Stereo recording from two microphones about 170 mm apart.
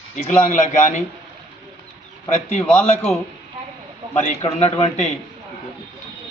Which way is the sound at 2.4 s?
40° left (ahead or behind).